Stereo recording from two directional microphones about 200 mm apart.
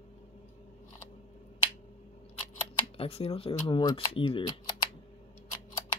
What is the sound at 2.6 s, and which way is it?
Speech, 30° left (ahead or behind).